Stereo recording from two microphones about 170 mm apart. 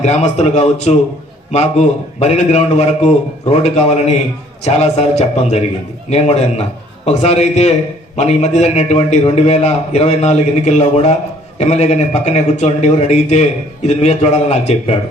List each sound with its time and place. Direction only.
0.0 s a man's voice: 40° left (ahead or behind)